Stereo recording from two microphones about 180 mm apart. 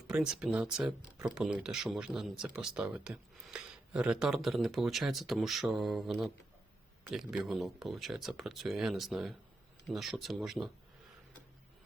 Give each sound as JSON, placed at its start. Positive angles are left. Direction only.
{"t": 0.1, "sound": "speech", "side_deg": -5}